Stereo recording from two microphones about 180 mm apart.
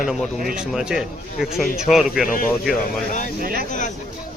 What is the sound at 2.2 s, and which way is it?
Speech, 50° left (ahead or behind).